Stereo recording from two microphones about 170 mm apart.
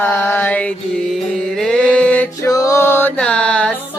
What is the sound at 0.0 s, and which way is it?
Mantra, 10° left (ahead or behind).